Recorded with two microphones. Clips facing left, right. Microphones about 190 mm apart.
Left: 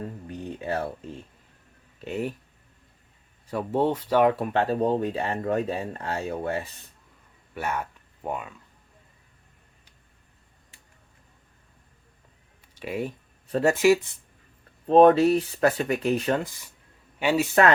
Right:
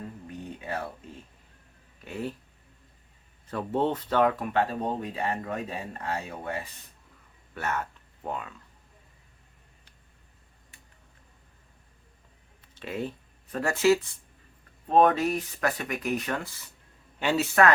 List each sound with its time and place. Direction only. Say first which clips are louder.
0.3 s music: left 6 dB; 30° left (ahead or behind)
2.0 s speech: left 5 dB; 20° left (ahead or behind)
3.4 s speech: left 3 dB; 10° left (ahead or behind)
4.3 s speech: left 3 dB; 30° left (ahead or behind)
7.5 s speech: left 2 dB; 10° left (ahead or behind)
12.6 s a sound: left 3 dB; 10° left (ahead or behind)
13.5 s speech: left 3 dB; 25° left (ahead or behind)
14.8 s speech: left 6 dB; 30° left (ahead or behind); by 17.5 s 10° left (ahead or behind)
17.5 s speech: left 1 dB; 25° left (ahead or behind)